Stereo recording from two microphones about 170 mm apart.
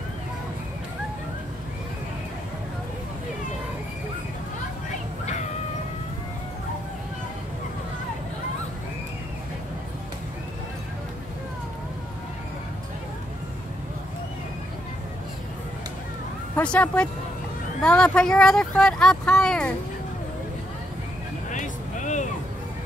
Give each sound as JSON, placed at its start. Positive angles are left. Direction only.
{"t": 16.5, "sound": "speech", "side_deg": 10}
{"t": 21.5, "sound": "vehicle", "side_deg": 45}